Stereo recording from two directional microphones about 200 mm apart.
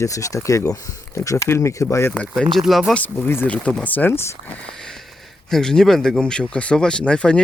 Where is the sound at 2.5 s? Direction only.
Centre (ahead or behind).